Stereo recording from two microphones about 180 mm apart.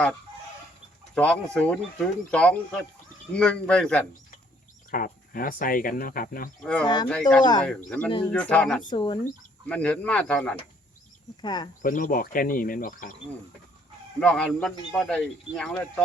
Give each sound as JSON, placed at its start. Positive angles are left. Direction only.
{"t": 1.1, "sound": "speech", "side_deg": 5}
{"t": 4.9, "sound": "speech", "side_deg": 50}
{"t": 6.6, "sound": "speech", "side_deg": 5}
{"t": 6.8, "sound": "speech", "side_deg": 25}
{"t": 7.1, "sound": "speech", "side_deg": 5}
{"t": 8.8, "sound": "speech", "side_deg": 25}
{"t": 9.6, "sound": "speech", "side_deg": 5}
{"t": 11.4, "sound": "speech", "side_deg": 25}
{"t": 11.8, "sound": "speech", "side_deg": 50}
{"t": 14.2, "sound": "speech", "side_deg": 5}